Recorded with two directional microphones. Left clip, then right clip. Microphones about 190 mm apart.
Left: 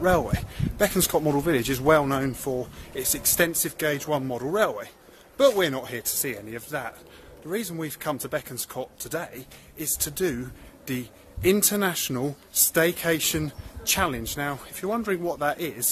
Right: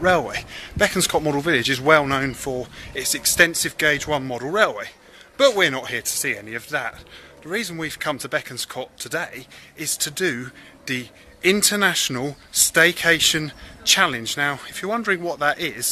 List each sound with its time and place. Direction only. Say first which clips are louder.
0.3 s speech: right 4 dB; centre (ahead or behind)